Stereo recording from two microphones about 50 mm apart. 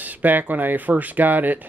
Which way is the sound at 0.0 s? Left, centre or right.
Right.